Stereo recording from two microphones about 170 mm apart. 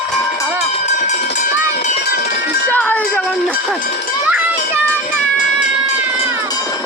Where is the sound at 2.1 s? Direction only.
65° left (ahead or behind).